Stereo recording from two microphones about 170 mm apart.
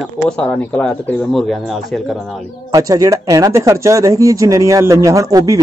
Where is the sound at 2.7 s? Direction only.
20° right (ahead or behind).